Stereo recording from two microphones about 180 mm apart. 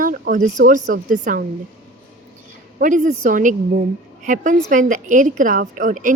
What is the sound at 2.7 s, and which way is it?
A woman's voice, 45° right (ahead or behind).